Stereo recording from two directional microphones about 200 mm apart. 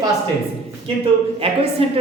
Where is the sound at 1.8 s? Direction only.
30° right (ahead or behind).